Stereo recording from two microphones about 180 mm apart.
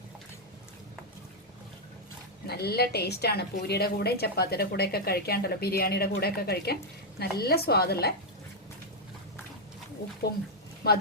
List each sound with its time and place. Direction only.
2.5 s a woman's voice: 60° left (ahead or behind)